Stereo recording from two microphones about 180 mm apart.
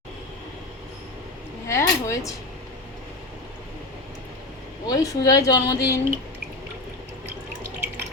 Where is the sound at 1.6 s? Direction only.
15° left (ahead or behind).